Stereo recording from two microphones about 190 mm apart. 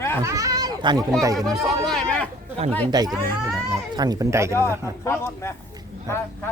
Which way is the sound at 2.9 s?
20° right (ahead or behind).